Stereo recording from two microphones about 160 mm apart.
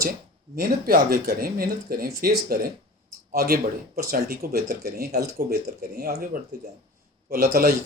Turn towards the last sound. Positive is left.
turn(degrees=-70)  # may be behind; listen again after turning